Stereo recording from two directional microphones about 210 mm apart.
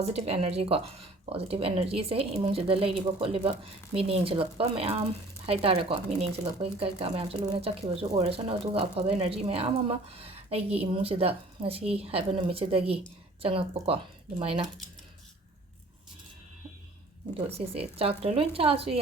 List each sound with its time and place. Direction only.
0.2 s speech: 30° right (ahead or behind)
17.5 s speech: 30° right (ahead or behind)